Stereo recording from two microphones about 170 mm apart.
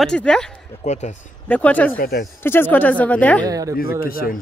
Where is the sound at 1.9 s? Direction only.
55° left (ahead or behind).